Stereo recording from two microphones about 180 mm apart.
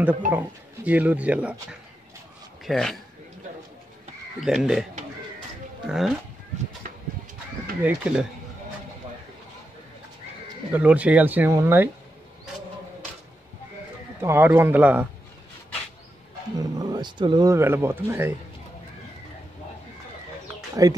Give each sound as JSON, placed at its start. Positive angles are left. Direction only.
{"t": 0.3, "sound": "a man's voice", "side_deg": -10}
{"t": 4.4, "sound": "speech", "side_deg": 0}
{"t": 5.9, "sound": "speech", "side_deg": -5}
{"t": 7.8, "sound": "speech", "side_deg": -5}
{"t": 10.7, "sound": "speech", "side_deg": -10}
{"t": 14.2, "sound": "speech", "side_deg": -10}
{"t": 16.5, "sound": "speech", "side_deg": -20}
{"t": 20.8, "sound": "speech", "side_deg": -20}